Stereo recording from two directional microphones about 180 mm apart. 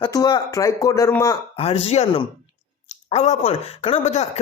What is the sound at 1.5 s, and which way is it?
Speech, 35° left (ahead or behind).